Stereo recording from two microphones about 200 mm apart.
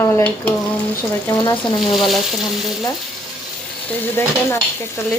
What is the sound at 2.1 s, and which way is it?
Frying, centre (ahead or behind).